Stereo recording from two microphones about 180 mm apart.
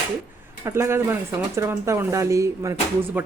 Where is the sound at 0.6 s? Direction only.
15° right (ahead or behind).